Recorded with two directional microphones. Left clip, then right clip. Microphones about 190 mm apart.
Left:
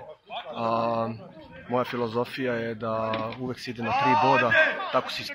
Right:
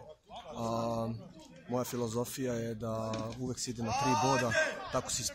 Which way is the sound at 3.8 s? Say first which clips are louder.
Left 9 dB; 40° right (ahead or behind).